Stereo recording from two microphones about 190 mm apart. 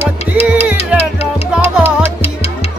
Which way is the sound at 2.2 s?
35° left (ahead or behind).